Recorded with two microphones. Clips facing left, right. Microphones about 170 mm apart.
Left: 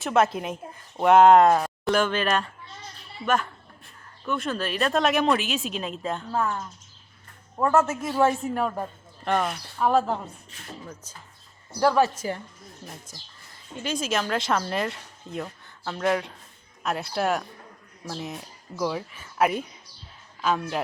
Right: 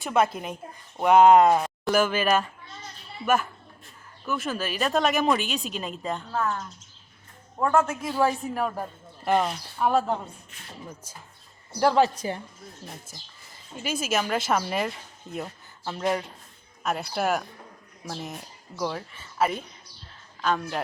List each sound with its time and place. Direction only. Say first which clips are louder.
0.0 s speech: left 2 dB; centre (ahead or behind)
7.6 s a woman's voice: left 1 dB; 5° left (ahead or behind); by 12.1 s 20° right (ahead or behind)
12.8 s a woman's voice: even; 30° right (ahead or behind)
13.8 s speech: even; 5° right (ahead or behind)